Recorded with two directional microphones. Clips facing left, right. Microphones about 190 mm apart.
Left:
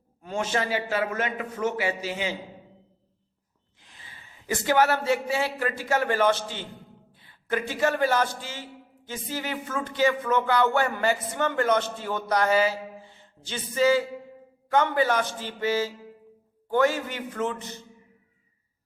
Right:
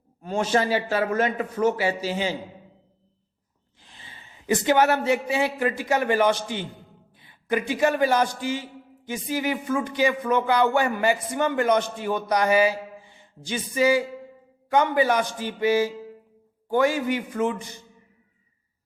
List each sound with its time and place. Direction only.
0.2 s a man's voice: 35° right (ahead or behind)
3.8 s a man's voice: 30° right (ahead or behind); by 17.8 s 10° right (ahead or behind)